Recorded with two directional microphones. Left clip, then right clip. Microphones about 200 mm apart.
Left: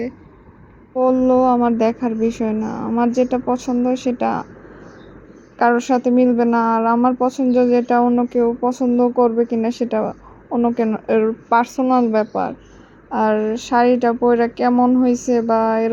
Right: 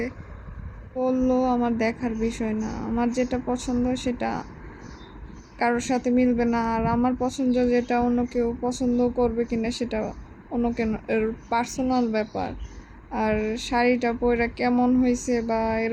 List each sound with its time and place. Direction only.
0.9 s speech: 5° left (ahead or behind)
5.5 s speech: 5° left (ahead or behind)